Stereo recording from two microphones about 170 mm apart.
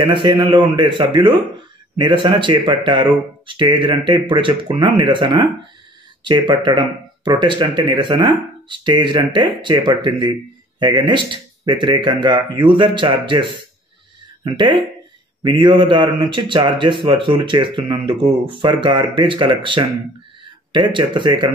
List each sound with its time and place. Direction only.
0.0 s a man's voice: 30° right (ahead or behind)